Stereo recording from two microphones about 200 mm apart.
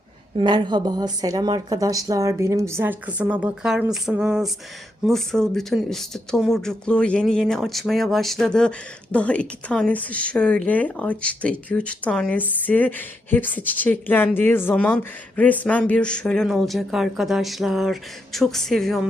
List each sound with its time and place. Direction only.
0.3 s speech: 20° right (ahead or behind); by 18.9 s centre (ahead or behind)